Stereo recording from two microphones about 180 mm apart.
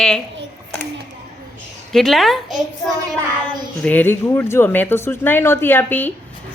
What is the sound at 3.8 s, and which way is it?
Speech, 10° left (ahead or behind).